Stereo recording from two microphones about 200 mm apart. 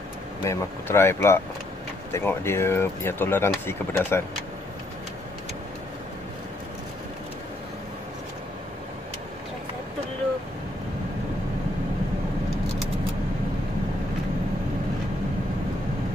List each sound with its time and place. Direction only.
0.4 s speech: 15° left (ahead or behind)